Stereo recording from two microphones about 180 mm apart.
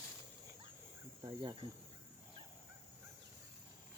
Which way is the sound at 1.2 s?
25° right (ahead or behind).